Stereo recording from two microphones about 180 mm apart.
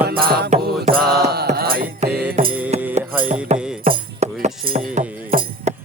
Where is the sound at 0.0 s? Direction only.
55° right (ahead or behind).